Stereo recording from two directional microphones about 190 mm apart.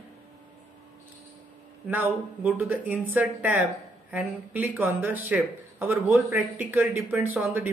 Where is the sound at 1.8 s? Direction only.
10° right (ahead or behind).